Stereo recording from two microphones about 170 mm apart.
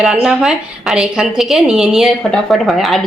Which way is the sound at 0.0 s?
5° right (ahead or behind).